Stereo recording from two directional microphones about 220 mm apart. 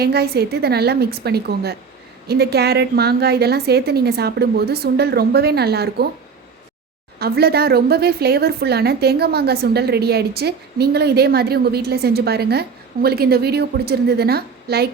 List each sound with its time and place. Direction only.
0.0 s a woman's voice: 45° right (ahead or behind)
7.2 s a woman's voice: 45° right (ahead or behind)